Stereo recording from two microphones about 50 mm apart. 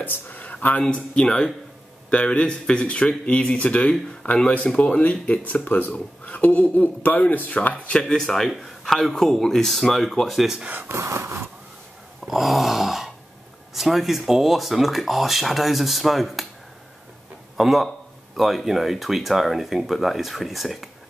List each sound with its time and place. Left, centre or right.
0.0 s speech: left
0.8 s speech: centre
8.0 s speech: centre
11.0 s a sound: right
12.3 s a sound: centre
13.7 s speech: centre
17.6 s a man's voice: centre